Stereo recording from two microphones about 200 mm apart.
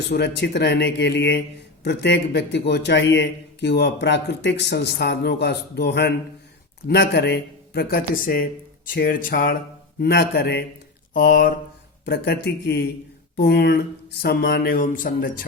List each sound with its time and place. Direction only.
0.1 s a man's voice: 60° left (ahead or behind)
10.0 s a man's voice: 60° left (ahead or behind)
11.1 s a sound: 45° left (ahead or behind)
12.0 s a man's voice: 55° left (ahead or behind)